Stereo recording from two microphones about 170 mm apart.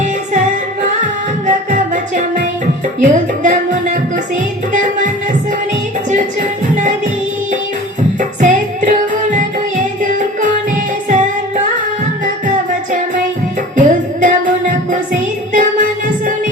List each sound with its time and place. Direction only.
1.5 s music: 45° right (ahead or behind)
8.4 s music: 45° right (ahead or behind)
13.7 s music: 50° right (ahead or behind)